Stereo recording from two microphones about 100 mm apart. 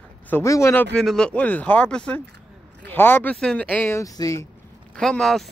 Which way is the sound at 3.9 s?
35° left (ahead or behind).